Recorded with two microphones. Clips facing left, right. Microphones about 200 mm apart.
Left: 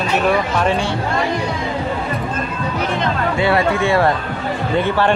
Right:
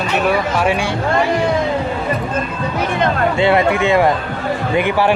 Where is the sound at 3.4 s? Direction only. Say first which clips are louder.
Right 2 dB; 20° right (ahead or behind).